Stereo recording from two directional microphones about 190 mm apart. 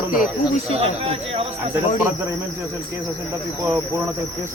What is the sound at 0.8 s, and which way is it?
Speech, 35° right (ahead or behind).